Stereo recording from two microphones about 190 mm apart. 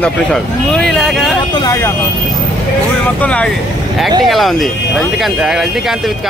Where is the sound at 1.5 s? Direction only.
20° left (ahead or behind).